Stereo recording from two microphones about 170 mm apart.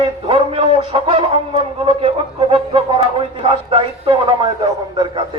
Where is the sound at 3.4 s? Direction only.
30° right (ahead or behind).